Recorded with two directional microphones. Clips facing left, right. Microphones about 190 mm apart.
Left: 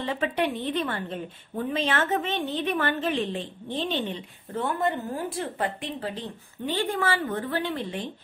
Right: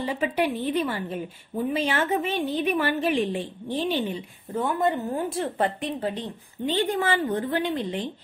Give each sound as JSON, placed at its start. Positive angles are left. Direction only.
{"t": 0.0, "sound": "a woman's voice", "side_deg": -10}